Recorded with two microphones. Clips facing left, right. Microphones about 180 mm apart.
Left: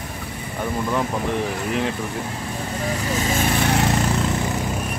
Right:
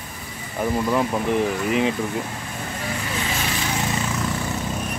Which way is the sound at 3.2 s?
50° left (ahead or behind).